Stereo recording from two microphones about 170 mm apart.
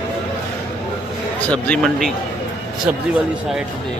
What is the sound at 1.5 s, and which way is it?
Speech, 5° left (ahead or behind).